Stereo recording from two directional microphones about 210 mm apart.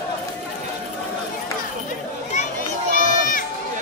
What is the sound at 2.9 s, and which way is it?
Crowd, 40° left (ahead or behind).